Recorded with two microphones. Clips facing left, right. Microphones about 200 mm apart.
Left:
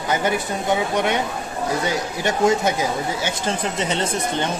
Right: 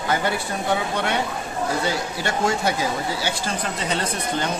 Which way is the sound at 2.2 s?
20° left (ahead or behind).